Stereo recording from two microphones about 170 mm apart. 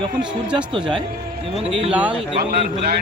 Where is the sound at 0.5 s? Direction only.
30° right (ahead or behind).